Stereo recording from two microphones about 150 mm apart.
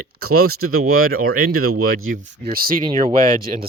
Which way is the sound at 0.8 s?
80° right.